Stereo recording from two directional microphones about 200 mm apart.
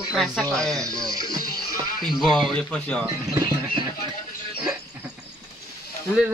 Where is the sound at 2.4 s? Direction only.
5° left (ahead or behind).